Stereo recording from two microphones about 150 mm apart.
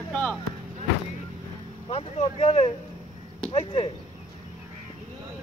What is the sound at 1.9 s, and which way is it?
Vehicle, 40° left (ahead or behind).